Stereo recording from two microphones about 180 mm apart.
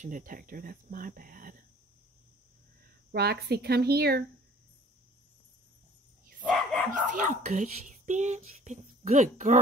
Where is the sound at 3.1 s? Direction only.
60° right (ahead or behind).